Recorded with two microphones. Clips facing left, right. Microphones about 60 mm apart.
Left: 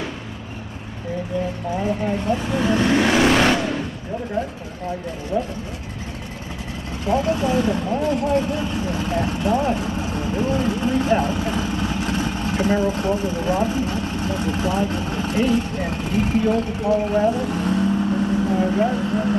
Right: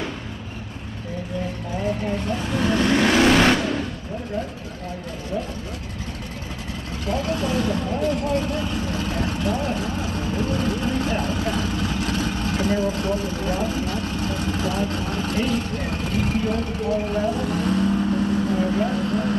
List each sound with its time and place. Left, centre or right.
2.0 s vehicle: centre
5.3 s speech: left
7.1 s speech: left